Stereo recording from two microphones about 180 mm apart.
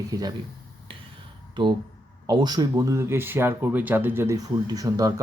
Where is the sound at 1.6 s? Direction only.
25° right (ahead or behind).